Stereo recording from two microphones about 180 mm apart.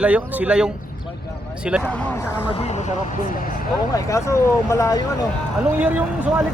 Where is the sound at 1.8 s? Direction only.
10° left (ahead or behind).